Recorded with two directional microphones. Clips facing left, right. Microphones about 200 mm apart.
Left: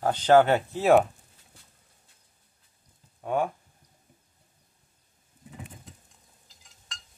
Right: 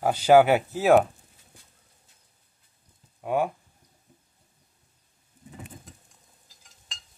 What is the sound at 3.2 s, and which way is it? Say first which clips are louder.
Speech: right 2 dB; 5° right (ahead or behind).